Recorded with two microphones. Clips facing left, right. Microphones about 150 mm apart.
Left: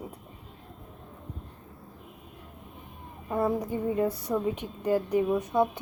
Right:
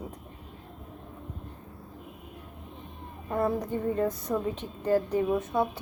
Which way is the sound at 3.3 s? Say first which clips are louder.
Even; 10° left (ahead or behind).